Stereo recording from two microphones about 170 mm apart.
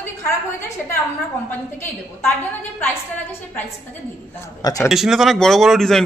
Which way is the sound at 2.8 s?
10° left (ahead or behind).